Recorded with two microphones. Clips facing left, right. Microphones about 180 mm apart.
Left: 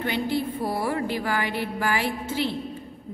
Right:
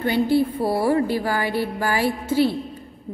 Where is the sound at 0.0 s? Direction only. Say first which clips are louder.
Right 7 dB; 35° right (ahead or behind).